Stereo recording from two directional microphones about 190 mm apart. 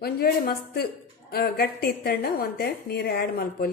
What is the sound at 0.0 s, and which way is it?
A woman's voice, 55° left (ahead or behind).